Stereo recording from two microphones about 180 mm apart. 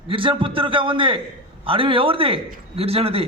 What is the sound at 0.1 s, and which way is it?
A man's voice, 30° right (ahead or behind).